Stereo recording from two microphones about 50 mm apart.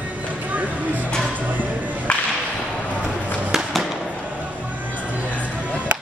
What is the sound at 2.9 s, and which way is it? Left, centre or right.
Chop, left.